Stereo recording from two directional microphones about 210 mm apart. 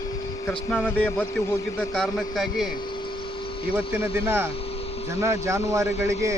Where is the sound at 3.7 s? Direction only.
10° right (ahead or behind).